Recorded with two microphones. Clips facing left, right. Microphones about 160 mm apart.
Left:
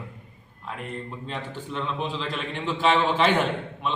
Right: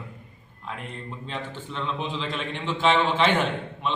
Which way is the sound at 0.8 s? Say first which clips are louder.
Left 2 dB; 5° left (ahead or behind).